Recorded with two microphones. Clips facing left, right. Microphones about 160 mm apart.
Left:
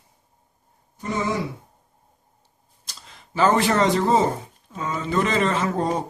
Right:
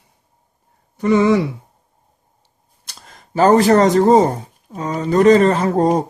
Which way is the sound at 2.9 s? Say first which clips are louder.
Right 6 dB; 50° right (ahead or behind).